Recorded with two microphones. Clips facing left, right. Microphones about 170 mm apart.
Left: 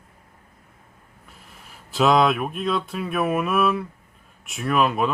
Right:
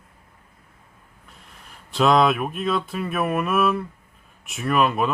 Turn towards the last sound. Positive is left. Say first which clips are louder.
# even
turn(degrees=0)  # may be behind; listen again after turning